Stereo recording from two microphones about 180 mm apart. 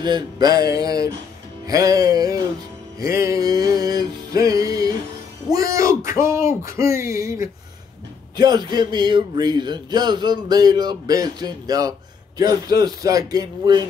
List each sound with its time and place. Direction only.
0.0 s speech: 25° right (ahead or behind)